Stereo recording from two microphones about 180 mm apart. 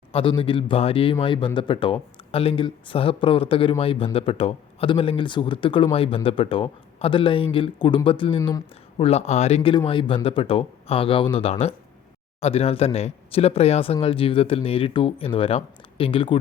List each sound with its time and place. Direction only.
0.1 s speech: 30° left (ahead or behind)
9.0 s speech: 35° left (ahead or behind)